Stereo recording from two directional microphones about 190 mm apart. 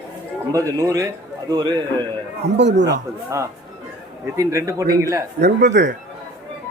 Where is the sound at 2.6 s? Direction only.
65° right (ahead or behind).